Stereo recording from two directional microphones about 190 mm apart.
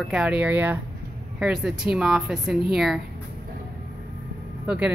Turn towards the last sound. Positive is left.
turn(degrees=-5)  # may be behind; listen again after turning